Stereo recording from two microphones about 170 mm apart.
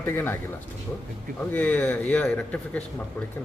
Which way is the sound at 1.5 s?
10° left (ahead or behind).